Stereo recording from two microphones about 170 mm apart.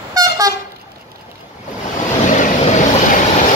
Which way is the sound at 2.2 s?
45° left (ahead or behind).